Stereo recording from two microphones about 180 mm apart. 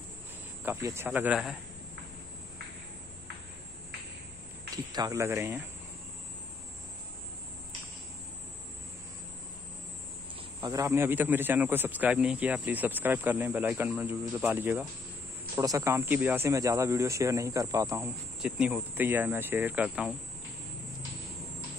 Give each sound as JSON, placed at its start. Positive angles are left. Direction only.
{"t": 0.7, "sound": "speech", "side_deg": -15}
{"t": 4.9, "sound": "speech", "side_deg": -20}
{"t": 10.6, "sound": "speech", "side_deg": -20}
{"t": 18.4, "sound": "speech", "side_deg": -5}